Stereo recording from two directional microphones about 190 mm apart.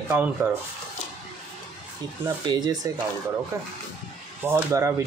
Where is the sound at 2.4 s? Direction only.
25° right (ahead or behind).